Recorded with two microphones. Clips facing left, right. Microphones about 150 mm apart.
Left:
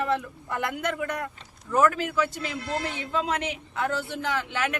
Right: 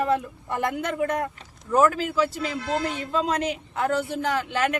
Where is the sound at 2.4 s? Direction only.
40° right (ahead or behind).